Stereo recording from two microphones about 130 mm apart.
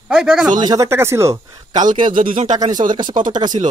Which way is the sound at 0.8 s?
20° right (ahead or behind).